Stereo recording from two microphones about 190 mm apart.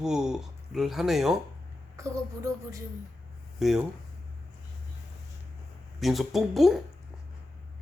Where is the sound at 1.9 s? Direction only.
15° right (ahead or behind).